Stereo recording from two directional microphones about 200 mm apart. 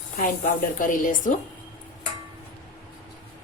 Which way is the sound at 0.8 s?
40° left (ahead or behind).